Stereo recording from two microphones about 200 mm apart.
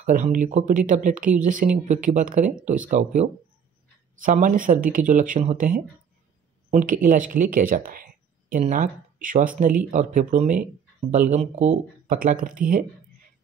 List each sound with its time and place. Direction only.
0.0 s speech: 40° right (ahead or behind)